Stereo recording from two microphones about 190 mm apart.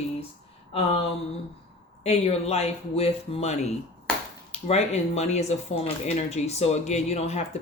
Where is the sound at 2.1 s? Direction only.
35° left (ahead or behind).